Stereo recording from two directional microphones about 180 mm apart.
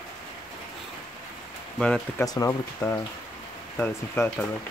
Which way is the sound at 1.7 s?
5° left (ahead or behind).